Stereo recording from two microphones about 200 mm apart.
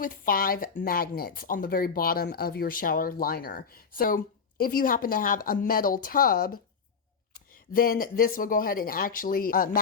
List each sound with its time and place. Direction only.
0.0 s speech: 45° left (ahead or behind)